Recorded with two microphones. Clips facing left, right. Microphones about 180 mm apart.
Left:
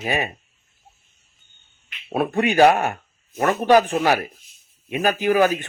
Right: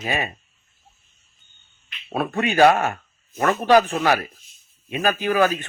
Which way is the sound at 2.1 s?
15° left (ahead or behind).